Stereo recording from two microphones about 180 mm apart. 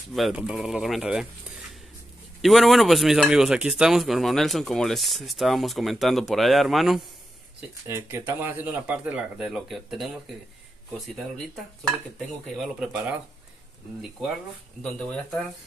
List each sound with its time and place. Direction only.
0.1 s speech: 5° right (ahead or behind)
2.4 s speech: centre (ahead or behind)
7.8 s speech: 15° right (ahead or behind)
12.6 s speech: 5° right (ahead or behind)